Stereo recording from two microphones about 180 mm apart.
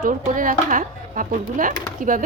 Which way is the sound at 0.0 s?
50° right (ahead or behind).